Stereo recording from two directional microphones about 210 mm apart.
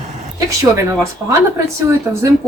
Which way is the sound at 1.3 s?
15° right (ahead or behind).